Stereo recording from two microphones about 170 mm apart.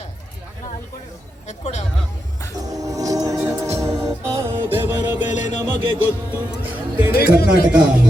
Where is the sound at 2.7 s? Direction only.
20° right (ahead or behind).